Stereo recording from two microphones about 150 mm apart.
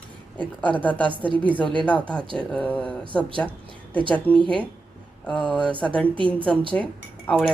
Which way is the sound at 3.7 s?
35° right (ahead or behind).